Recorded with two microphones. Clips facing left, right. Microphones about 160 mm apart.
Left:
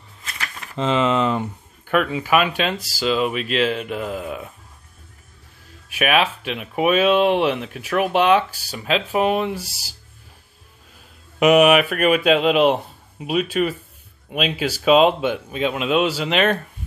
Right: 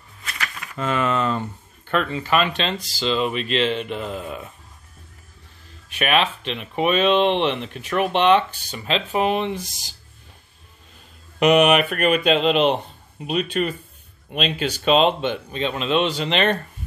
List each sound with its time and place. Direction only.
0.4 s speech: 25° left (ahead or behind); by 4.5 s 5° left (ahead or behind)
5.9 s speech: 5° left (ahead or behind)
11.3 s speech: 5° left (ahead or behind)